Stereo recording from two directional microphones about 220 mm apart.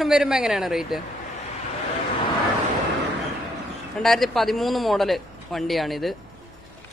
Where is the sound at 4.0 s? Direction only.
Centre (ahead or behind).